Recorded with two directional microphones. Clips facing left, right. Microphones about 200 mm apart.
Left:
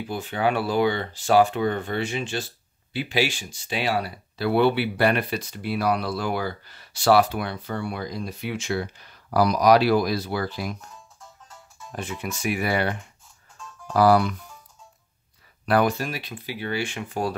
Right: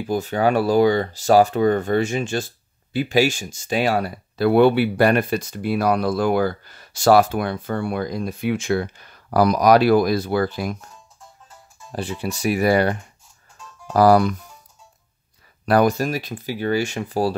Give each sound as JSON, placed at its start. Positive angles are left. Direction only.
{"t": 0.1, "sound": "speech", "side_deg": -40}
{"t": 11.9, "sound": "speech", "side_deg": -35}
{"t": 13.9, "sound": "speech", "side_deg": -45}
{"t": 15.6, "sound": "speech", "side_deg": -40}